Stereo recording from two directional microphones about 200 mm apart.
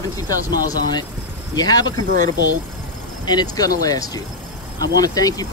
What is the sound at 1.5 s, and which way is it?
Speech, 20° left (ahead or behind).